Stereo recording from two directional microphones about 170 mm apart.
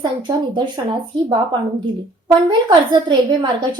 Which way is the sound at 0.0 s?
25° right (ahead or behind).